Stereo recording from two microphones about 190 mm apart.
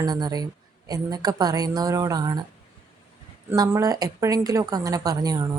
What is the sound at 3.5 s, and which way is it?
A woman's voice, 20° right (ahead or behind).